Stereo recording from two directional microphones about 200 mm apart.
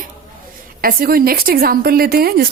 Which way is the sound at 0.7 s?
45° right (ahead or behind).